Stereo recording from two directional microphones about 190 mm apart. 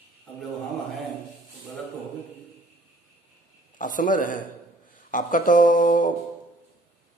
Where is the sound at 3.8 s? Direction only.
45° left (ahead or behind).